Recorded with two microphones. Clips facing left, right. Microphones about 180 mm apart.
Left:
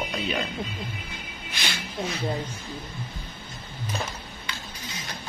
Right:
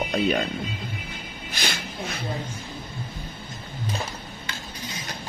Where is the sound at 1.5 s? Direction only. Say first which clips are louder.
Right 1 dB; 45° right (ahead or behind).